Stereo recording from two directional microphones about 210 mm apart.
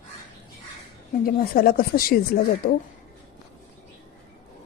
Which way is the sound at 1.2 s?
45° left (ahead or behind).